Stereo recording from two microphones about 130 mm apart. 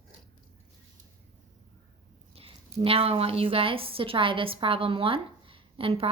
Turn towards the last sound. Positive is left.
turn(degrees=-45)  # may be behind; listen again after turning